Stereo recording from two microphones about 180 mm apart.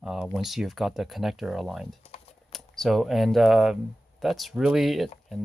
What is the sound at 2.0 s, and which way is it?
Typing, 35° left (ahead or behind).